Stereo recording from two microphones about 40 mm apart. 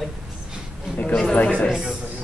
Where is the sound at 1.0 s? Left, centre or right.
Left.